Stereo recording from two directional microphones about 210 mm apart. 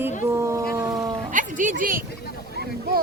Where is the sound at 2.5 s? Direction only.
50° right (ahead or behind).